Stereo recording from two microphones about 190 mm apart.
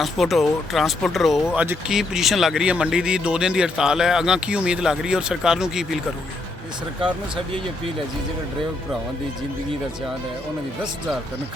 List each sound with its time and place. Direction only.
0.0 s speech: centre (ahead or behind)